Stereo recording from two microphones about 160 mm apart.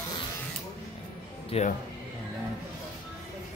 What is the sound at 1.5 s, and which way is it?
Speech, 40° left (ahead or behind).